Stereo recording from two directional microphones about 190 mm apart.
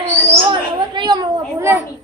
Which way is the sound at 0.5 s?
25° right (ahead or behind).